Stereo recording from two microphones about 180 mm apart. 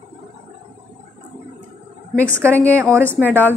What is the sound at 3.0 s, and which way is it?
Speech, 10° left (ahead or behind).